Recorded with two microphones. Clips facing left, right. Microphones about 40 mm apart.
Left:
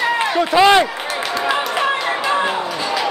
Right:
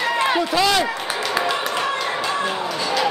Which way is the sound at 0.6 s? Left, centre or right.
Left.